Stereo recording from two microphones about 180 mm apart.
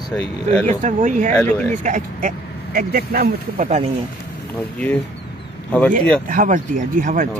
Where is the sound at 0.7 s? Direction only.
45° right (ahead or behind).